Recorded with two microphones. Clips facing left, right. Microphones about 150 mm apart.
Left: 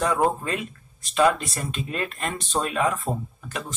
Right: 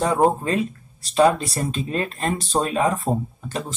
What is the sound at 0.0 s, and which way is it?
Speech, 30° right (ahead or behind).